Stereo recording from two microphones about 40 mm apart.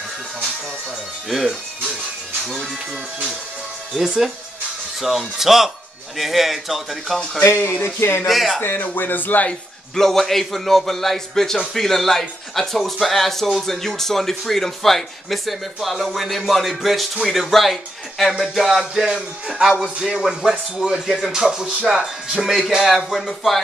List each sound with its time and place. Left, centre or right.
1.3 s speech: centre
3.9 s speech: centre
7.4 s speech: left
8.3 s speech: centre
8.8 s speech: left
9.9 s speech: centre
22.8 s speech: centre